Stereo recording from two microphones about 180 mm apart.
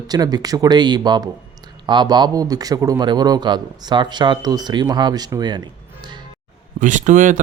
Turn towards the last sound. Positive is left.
turn(degrees=-45)  # may be behind; listen again after turning